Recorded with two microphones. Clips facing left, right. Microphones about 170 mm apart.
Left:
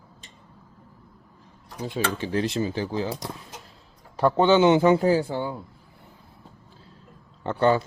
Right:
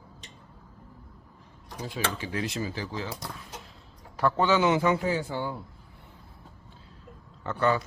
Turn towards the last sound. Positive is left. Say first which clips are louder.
# left 5 dB
turn(degrees=30)  # may be behind; listen again after turning